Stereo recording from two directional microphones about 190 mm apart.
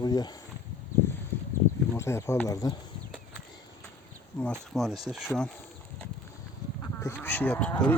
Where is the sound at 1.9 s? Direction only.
15° left (ahead or behind).